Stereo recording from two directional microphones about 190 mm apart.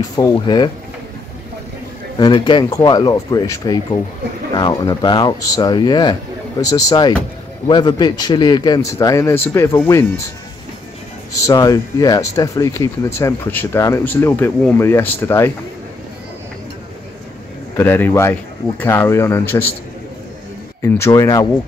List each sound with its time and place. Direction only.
0.0 s speech: 20° left (ahead or behind)
2.1 s speech: 25° left (ahead or behind)
11.4 s speech: 20° left (ahead or behind)
17.7 s speech: 10° left (ahead or behind)
20.8 s speech: 15° left (ahead or behind)